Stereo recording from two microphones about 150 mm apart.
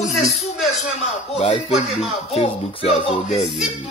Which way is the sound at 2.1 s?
45° left (ahead or behind).